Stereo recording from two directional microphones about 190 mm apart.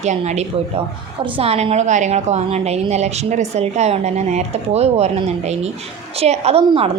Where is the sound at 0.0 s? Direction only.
35° right (ahead or behind).